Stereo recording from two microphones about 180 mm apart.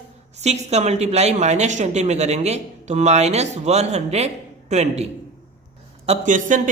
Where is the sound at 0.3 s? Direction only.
35° right (ahead or behind).